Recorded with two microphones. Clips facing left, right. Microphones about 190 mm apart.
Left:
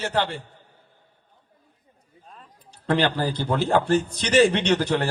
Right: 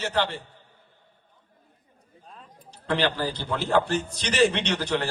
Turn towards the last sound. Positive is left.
turn(degrees=50)  # may be behind; listen again after turning